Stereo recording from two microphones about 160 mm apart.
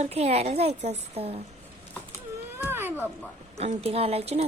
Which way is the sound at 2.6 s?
15° right (ahead or behind).